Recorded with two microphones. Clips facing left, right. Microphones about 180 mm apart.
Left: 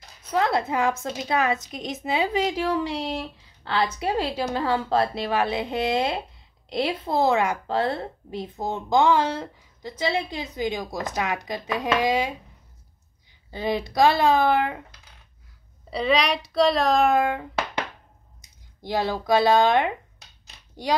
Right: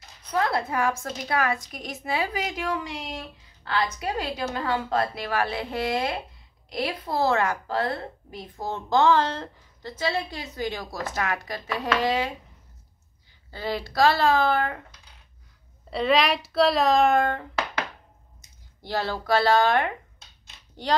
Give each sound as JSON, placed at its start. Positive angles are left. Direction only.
{"t": 0.2, "sound": "a woman's voice", "side_deg": 25}
{"t": 7.6, "sound": "speech", "side_deg": 25}
{"t": 13.5, "sound": "speech", "side_deg": 20}
{"t": 15.9, "sound": "speech", "side_deg": 0}
{"t": 18.8, "sound": "speech", "side_deg": 15}